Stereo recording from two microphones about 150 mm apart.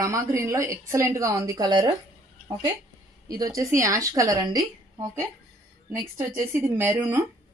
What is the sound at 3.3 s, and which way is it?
Speech, 25° right (ahead or behind).